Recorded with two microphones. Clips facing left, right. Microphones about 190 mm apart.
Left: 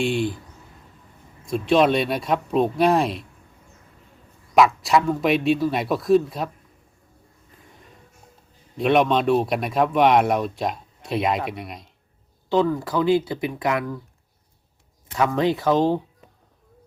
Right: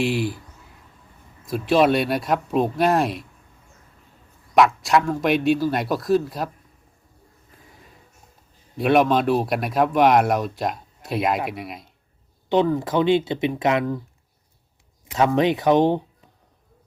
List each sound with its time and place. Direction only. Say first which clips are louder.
0.0 s speech: even; 5° right (ahead or behind)
1.5 s speech: even; 5° right (ahead or behind)
4.5 s speech: even; centre (ahead or behind)
8.8 s speech: right 1 dB; centre (ahead or behind)
12.5 s speech: right 1 dB; 20° right (ahead or behind)
15.0 s speech: right 2 dB; 20° right (ahead or behind)